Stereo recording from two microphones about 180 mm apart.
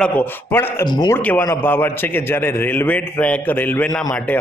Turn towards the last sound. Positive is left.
turn(degrees=5)  # may be behind; listen again after turning